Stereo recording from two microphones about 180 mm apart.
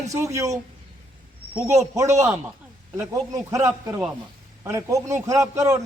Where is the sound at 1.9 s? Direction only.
15° right (ahead or behind).